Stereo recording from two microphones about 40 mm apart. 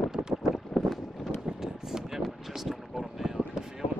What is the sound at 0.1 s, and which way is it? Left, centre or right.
Boat, centre.